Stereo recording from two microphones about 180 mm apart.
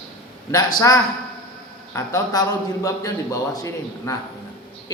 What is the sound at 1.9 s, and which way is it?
A woman's voice, 20° left (ahead or behind).